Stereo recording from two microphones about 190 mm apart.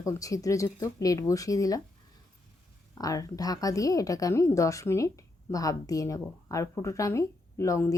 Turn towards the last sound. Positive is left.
turn(degrees=15)  # may be behind; listen again after turning